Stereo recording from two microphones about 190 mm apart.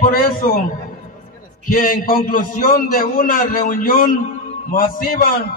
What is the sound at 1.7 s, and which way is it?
A man's voice, 45° left (ahead or behind).